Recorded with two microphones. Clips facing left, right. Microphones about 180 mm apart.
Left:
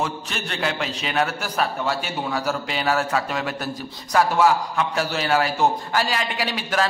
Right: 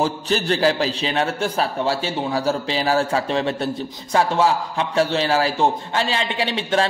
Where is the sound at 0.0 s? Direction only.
35° right (ahead or behind).